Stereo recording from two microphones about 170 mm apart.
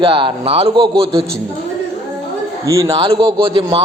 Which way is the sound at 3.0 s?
30° right (ahead or behind).